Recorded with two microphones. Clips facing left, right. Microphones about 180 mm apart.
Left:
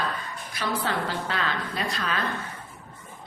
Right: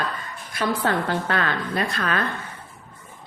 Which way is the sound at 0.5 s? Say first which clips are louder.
Right 5 dB; 55° right (ahead or behind).